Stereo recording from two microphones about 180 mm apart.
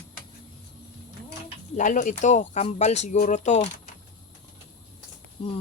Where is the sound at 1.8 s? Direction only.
45° left (ahead or behind).